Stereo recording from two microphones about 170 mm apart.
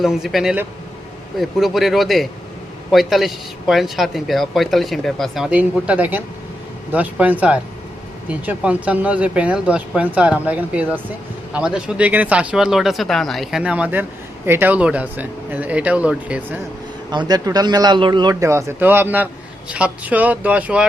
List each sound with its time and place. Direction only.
0.0 s speech: centre (ahead or behind)
17.1 s speech: 25° right (ahead or behind); by 20.8 s 10° right (ahead or behind)